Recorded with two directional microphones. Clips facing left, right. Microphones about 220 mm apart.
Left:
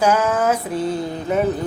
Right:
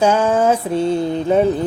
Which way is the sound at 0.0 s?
30° right (ahead or behind).